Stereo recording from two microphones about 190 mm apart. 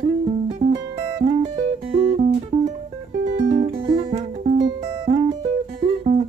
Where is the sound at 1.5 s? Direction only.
35° right (ahead or behind).